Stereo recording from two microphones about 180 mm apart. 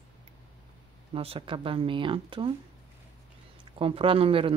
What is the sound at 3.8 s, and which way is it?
Speech, 30° right (ahead or behind).